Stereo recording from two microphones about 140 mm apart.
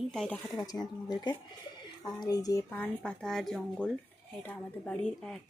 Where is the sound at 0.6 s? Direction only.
30° left (ahead or behind).